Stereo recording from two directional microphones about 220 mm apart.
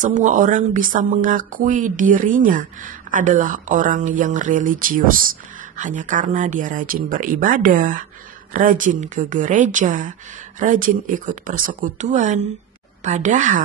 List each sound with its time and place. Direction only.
0.0 s speech: 35° right (ahead or behind)